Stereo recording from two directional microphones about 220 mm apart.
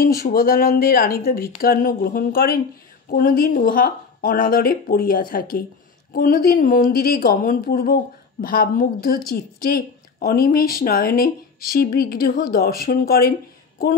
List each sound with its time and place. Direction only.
0.0 s speech: 45° left (ahead or behind)